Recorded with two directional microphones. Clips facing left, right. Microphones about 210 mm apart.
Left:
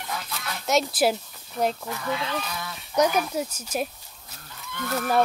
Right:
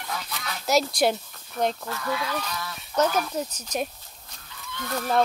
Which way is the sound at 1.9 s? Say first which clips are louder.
Even; 20° left (ahead or behind).